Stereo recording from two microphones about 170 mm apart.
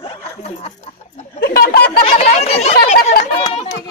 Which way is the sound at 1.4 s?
65° left (ahead or behind).